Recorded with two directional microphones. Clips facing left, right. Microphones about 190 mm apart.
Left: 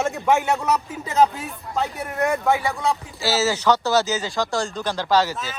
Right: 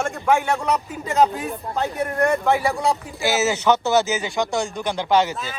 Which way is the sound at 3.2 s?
20° right (ahead or behind).